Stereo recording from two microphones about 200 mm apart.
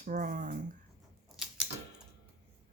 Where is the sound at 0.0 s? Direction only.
40° right (ahead or behind).